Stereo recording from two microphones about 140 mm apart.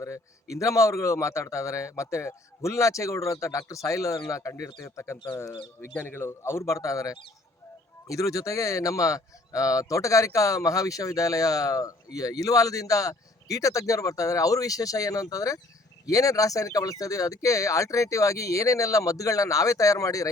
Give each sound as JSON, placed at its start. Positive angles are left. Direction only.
{"t": 0.5, "sound": "speech", "side_deg": 20}